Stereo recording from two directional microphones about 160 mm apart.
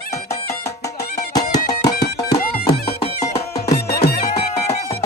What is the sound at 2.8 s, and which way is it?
Music, 45° left (ahead or behind).